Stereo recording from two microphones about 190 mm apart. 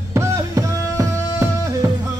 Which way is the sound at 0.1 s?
15° right (ahead or behind).